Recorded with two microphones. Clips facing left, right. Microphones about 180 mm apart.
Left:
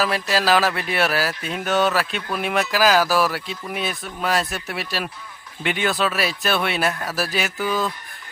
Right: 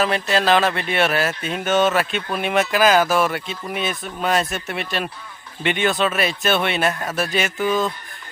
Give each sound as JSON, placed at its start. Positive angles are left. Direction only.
{"t": 0.0, "sound": "speech", "side_deg": 5}
{"t": 7.6, "sound": "speech", "side_deg": -20}